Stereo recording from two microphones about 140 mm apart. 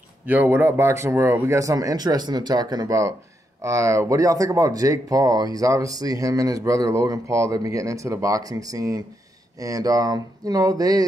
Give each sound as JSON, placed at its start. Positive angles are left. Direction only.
{"t": 0.3, "sound": "speech", "side_deg": -15}